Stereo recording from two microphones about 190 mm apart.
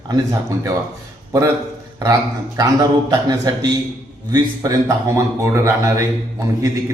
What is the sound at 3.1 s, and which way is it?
A man's voice, 20° right (ahead or behind).